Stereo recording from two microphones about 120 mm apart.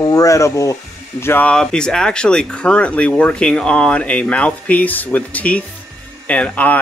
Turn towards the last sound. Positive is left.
turn(degrees=10)  # may be behind; listen again after turning